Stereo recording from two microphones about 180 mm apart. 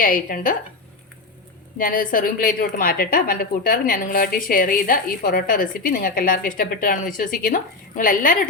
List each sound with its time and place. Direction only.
0.0 s a woman's voice: 50° left (ahead or behind)
1.8 s a woman's voice: 50° left (ahead or behind)